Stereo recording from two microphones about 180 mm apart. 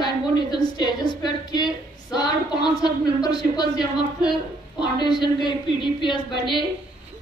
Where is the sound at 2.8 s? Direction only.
20° left (ahead or behind).